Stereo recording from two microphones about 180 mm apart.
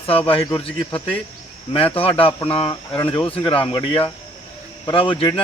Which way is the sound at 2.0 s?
30° left (ahead or behind).